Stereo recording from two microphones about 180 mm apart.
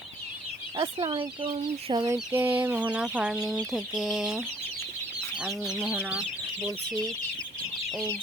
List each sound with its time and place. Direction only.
0.8 s speech: 30° right (ahead or behind)
2.1 s speech: 10° right (ahead or behind)
3.7 s chicken: centre (ahead or behind)